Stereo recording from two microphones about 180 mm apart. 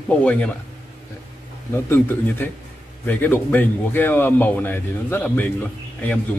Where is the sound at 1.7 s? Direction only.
10° left (ahead or behind).